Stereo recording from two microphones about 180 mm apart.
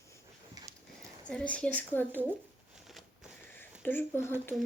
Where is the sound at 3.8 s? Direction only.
10° left (ahead or behind).